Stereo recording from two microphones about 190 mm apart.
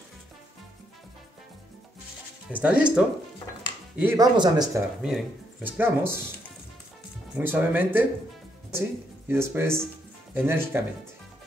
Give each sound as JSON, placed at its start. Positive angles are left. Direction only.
{"t": 2.5, "sound": "speech", "side_deg": -5}
{"t": 5.0, "sound": "speech", "side_deg": -5}
{"t": 7.3, "sound": "speech", "side_deg": -10}
{"t": 9.3, "sound": "speech", "side_deg": -15}